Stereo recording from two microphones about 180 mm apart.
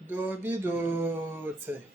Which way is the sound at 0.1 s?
10° right (ahead or behind).